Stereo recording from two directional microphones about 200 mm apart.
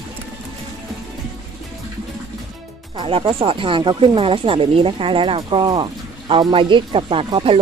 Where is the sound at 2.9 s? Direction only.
25° right (ahead or behind).